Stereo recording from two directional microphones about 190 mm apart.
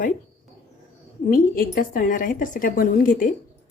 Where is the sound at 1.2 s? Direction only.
50° left (ahead or behind).